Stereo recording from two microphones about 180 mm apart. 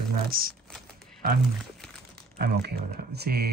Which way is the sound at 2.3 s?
60° right (ahead or behind).